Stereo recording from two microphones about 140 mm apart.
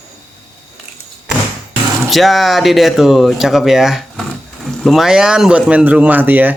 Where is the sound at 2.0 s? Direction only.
Centre (ahead or behind).